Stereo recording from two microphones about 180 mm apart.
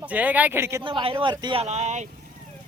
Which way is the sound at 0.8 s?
30° right (ahead or behind).